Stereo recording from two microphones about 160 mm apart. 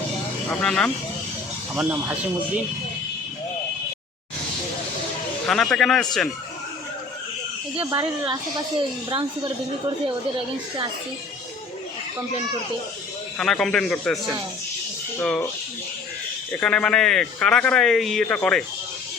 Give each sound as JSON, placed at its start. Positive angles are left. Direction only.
{"t": 0.6, "sound": "a man's voice", "side_deg": 5}
{"t": 1.7, "sound": "speech", "side_deg": -10}
{"t": 5.5, "sound": "a man's voice", "side_deg": 0}
{"t": 7.9, "sound": "a woman's voice", "side_deg": -20}
{"t": 13.4, "sound": "a man's voice", "side_deg": 5}
{"t": 15.2, "sound": "speech", "side_deg": 5}
{"t": 16.5, "sound": "a man's voice", "side_deg": 5}